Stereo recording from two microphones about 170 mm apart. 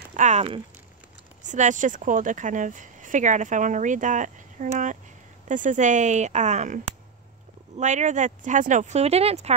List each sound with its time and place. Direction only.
0.1 s speech: 45° right (ahead or behind)
7.8 s speech: 45° right (ahead or behind)